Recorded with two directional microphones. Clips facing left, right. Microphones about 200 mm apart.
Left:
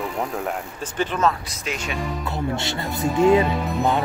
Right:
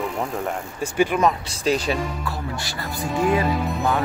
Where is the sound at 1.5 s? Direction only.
35° right (ahead or behind).